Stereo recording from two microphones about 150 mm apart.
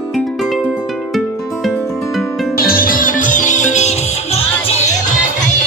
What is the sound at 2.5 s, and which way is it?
Music, 75° left (ahead or behind).